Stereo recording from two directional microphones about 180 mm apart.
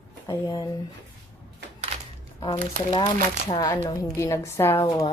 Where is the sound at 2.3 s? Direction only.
20° left (ahead or behind).